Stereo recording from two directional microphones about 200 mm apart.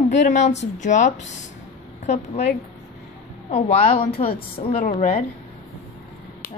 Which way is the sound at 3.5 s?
30° left (ahead or behind).